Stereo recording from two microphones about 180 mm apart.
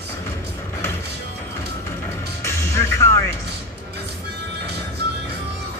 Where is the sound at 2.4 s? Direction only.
15° left (ahead or behind).